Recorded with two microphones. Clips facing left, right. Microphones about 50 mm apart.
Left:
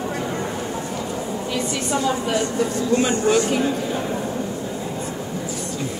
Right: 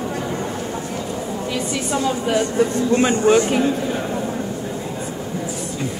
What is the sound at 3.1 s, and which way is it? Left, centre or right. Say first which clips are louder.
Speech: right 3 dB; right.